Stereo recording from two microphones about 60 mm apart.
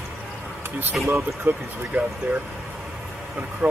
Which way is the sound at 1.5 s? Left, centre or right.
Right.